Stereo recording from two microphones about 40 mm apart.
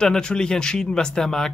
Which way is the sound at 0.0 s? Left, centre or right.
Left.